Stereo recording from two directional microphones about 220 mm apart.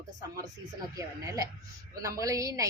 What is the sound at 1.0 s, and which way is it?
Speech, 15° right (ahead or behind).